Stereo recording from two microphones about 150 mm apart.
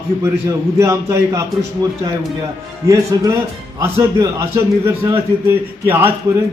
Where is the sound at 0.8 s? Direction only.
20° right (ahead or behind).